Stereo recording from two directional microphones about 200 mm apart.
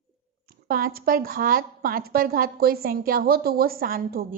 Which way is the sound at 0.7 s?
45° right (ahead or behind).